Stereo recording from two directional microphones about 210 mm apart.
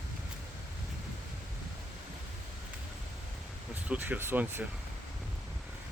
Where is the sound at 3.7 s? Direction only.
10° right (ahead or behind).